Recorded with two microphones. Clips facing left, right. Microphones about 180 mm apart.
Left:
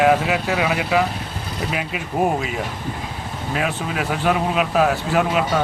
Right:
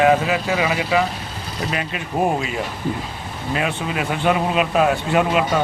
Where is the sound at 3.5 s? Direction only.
Centre (ahead or behind).